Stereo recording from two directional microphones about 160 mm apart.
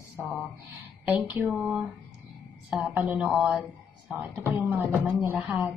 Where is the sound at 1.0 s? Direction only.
10° right (ahead or behind).